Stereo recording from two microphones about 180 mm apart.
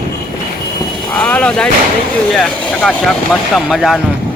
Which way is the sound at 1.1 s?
5° left (ahead or behind).